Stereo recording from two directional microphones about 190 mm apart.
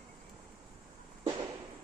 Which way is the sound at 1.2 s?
20° right (ahead or behind).